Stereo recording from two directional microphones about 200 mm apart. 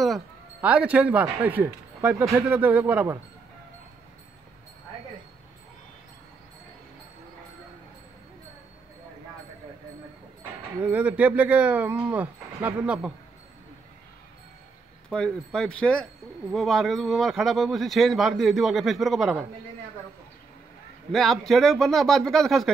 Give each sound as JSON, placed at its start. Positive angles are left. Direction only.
{"t": 0.0, "sound": "speech", "side_deg": -5}
{"t": 10.8, "sound": "speech", "side_deg": -5}
{"t": 15.0, "sound": "speech", "side_deg": 5}
{"t": 21.1, "sound": "speech", "side_deg": 0}